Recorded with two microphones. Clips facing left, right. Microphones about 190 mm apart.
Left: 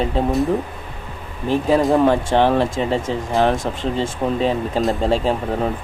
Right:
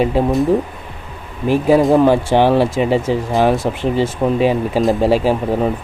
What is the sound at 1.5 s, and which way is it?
Speech, 5° right (ahead or behind).